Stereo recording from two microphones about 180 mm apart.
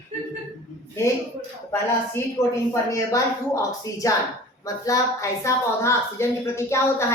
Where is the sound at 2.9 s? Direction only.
15° left (ahead or behind).